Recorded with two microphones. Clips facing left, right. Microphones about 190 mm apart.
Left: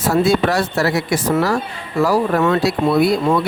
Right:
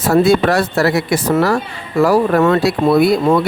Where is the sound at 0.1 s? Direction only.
55° right (ahead or behind).